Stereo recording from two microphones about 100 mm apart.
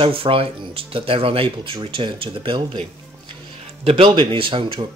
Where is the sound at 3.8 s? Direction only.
75° right (ahead or behind).